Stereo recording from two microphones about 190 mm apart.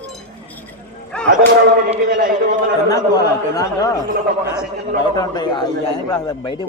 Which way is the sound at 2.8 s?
20° left (ahead or behind).